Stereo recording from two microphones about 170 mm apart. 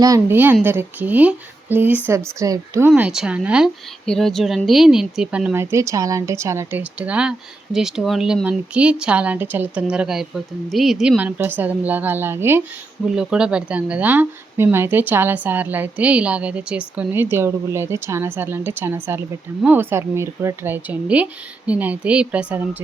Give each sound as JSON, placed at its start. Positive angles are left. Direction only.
{"t": 0.0, "sound": "a woman's voice", "side_deg": -15}
{"t": 2.9, "sound": "speech", "side_deg": -5}
{"t": 4.0, "sound": "speech", "side_deg": 5}
{"t": 5.7, "sound": "a woman's voice", "side_deg": -20}